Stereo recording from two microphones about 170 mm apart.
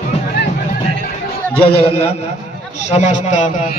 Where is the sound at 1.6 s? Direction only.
35° left (ahead or behind).